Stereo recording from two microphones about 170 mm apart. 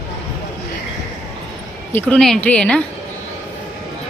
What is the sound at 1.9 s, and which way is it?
Speech, 5° left (ahead or behind).